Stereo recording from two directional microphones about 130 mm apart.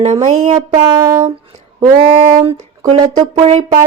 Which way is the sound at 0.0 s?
60° right (ahead or behind).